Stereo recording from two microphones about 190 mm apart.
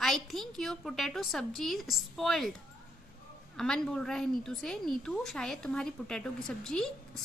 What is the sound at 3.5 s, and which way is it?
A woman's voice, 5° left (ahead or behind).